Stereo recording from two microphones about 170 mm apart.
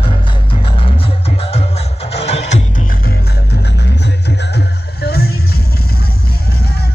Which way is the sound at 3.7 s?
80° left.